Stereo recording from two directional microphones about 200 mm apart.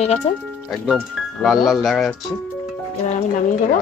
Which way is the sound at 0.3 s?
30° left (ahead or behind).